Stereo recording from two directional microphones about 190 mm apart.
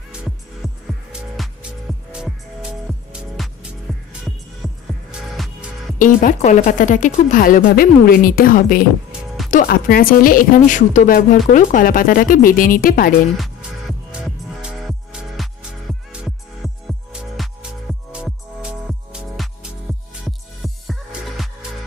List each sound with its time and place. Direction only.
1.3 s music: centre (ahead or behind)
5.4 s music: centre (ahead or behind)
5.9 s speech: 45° left (ahead or behind)
13.4 s music: centre (ahead or behind)